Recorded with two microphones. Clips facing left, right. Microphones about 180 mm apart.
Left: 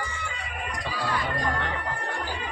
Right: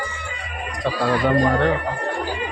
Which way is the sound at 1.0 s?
85° right.